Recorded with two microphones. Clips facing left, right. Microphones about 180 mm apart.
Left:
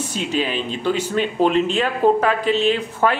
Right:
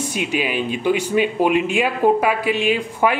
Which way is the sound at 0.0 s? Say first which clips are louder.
Even; 10° right (ahead or behind).